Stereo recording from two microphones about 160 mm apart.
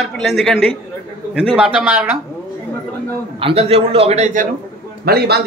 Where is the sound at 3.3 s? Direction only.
35° right (ahead or behind).